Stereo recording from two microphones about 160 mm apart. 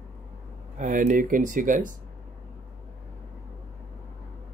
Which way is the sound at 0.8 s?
50° right (ahead or behind).